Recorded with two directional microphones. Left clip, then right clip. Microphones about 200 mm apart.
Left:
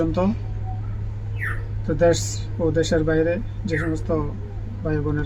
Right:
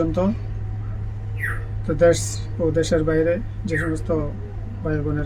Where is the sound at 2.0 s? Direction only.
5° right (ahead or behind).